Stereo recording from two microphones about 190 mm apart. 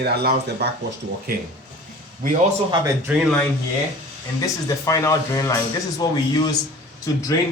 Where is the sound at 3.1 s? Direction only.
10° right (ahead or behind).